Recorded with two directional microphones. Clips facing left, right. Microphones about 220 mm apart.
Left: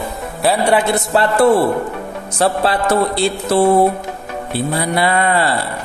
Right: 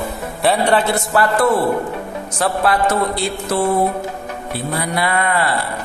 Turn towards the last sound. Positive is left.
turn(degrees=30)  # may be behind; listen again after turning